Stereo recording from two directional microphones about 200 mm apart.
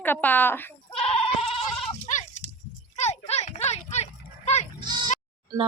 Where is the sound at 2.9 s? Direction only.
35° left (ahead or behind).